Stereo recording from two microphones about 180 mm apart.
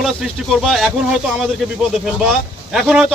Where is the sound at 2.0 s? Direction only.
Centre (ahead or behind).